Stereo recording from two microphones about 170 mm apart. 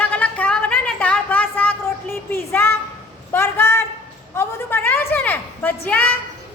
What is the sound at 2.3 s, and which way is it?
A woman's voice, 15° left (ahead or behind).